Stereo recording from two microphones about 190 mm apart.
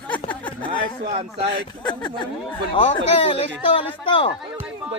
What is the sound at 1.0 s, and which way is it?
Speech, 35° right (ahead or behind).